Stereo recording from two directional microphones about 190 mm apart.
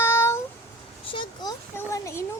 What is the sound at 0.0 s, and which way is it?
Cat, 15° left (ahead or behind).